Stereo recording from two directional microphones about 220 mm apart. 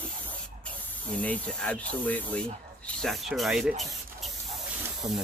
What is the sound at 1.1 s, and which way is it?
Speech, 5° left (ahead or behind).